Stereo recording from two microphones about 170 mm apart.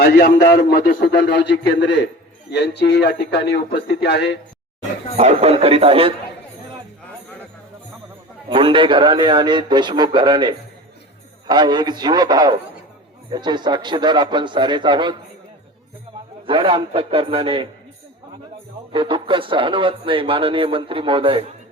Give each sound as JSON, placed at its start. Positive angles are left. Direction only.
{"t": 0.0, "sound": "a man's voice", "side_deg": 65}
{"t": 5.1, "sound": "speech", "side_deg": -40}
{"t": 8.4, "sound": "a man's voice", "side_deg": -30}
{"t": 16.5, "sound": "speech", "side_deg": -30}
{"t": 18.9, "sound": "speech", "side_deg": -30}